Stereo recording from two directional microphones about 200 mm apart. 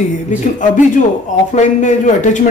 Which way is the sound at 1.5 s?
40° left (ahead or behind).